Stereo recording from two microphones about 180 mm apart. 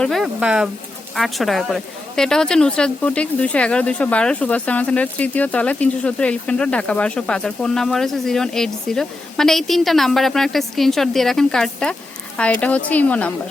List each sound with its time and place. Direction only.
0.0 s a woman's voice: centre (ahead or behind)